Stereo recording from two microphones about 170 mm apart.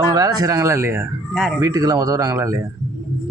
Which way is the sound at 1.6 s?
20° right (ahead or behind).